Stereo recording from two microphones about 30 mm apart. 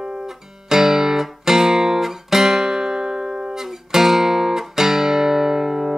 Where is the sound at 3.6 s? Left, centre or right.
Centre.